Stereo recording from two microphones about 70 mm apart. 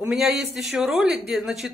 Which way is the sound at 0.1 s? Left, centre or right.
Centre.